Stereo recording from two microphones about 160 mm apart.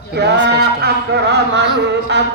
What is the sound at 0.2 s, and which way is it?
Chant, 90° right.